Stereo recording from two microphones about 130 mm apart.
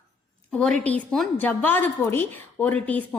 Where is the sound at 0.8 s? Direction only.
10° left (ahead or behind).